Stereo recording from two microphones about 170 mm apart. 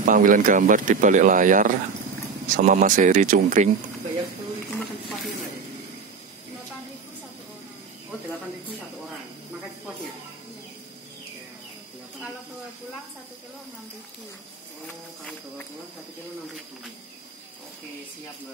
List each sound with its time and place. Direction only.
0.0 s speech: 50° right (ahead or behind)